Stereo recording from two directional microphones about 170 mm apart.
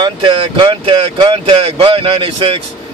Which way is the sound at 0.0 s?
30° right (ahead or behind).